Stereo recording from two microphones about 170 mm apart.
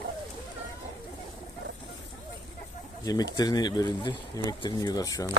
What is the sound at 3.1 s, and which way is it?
Speech, 20° left (ahead or behind).